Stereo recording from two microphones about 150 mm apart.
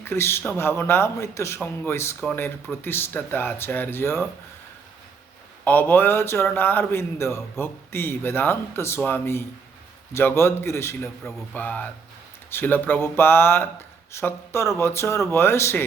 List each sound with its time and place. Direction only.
0.0 s speech: 15° left (ahead or behind)
5.6 s speech: 10° left (ahead or behind)